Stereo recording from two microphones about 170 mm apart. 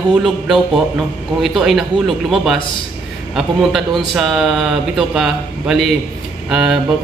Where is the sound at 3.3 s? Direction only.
Centre (ahead or behind).